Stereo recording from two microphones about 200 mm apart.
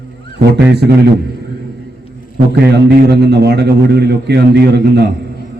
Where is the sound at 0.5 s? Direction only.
55° right (ahead or behind).